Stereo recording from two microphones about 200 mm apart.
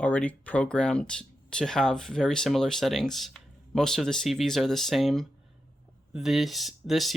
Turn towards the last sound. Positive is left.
turn(degrees=0)  # may be behind; listen again after turning